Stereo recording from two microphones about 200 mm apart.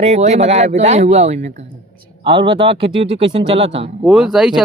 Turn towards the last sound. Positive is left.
turn(degrees=-5)  # may be behind; listen again after turning